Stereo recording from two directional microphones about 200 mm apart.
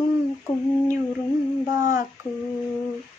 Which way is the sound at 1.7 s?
15° right (ahead or behind).